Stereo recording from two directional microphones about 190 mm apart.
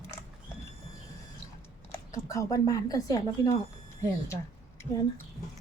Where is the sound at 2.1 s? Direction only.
15° left (ahead or behind).